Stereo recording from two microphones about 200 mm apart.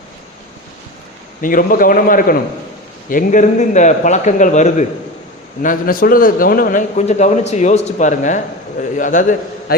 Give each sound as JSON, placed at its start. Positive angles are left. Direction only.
{"t": 1.4, "sound": "a man's voice", "side_deg": 45}